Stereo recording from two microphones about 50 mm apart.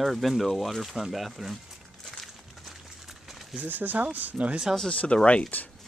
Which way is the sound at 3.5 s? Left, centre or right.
Right.